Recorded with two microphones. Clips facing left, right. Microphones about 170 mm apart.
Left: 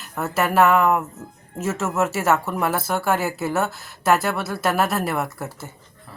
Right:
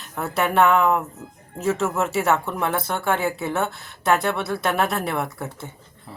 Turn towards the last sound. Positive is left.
turn(degrees=5)  # may be behind; listen again after turning